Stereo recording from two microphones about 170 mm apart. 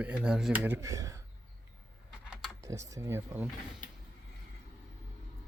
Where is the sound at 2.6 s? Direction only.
20° right (ahead or behind).